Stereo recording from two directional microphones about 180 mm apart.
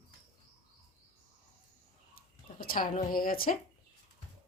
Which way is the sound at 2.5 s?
50° left (ahead or behind).